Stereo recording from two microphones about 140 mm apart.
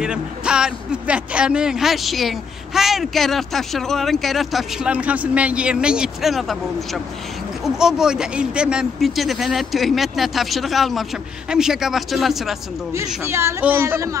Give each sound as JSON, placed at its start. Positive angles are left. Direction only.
{"t": 0.0, "sound": "speech", "side_deg": -5}
{"t": 13.2, "sound": "speech", "side_deg": -20}